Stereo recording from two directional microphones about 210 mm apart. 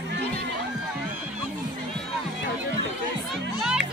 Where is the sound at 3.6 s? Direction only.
5° right (ahead or behind).